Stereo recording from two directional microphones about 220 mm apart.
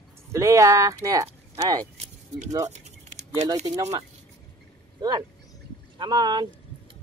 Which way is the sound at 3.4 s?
15° right (ahead or behind).